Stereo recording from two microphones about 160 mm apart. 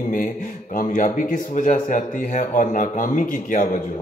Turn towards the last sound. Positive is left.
turn(degrees=55)  # may be behind; listen again after turning